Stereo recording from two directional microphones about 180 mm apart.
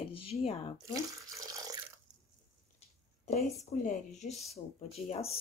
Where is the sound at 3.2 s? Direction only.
45° left (ahead or behind).